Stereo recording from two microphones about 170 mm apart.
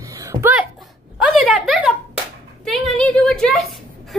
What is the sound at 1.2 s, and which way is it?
A woman's voice, 5° right (ahead or behind).